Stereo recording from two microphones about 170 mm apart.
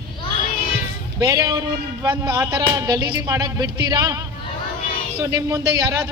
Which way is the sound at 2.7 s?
25° right (ahead or behind).